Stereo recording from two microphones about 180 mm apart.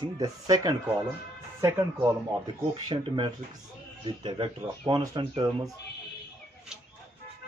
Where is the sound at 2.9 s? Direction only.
25° right (ahead or behind).